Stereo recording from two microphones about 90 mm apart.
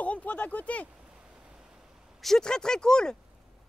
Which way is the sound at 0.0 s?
15° left (ahead or behind).